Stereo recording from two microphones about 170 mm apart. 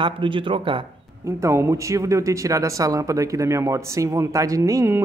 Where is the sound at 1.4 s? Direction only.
15° right (ahead or behind).